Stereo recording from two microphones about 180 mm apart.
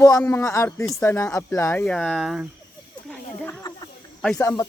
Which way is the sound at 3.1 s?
15° left (ahead or behind).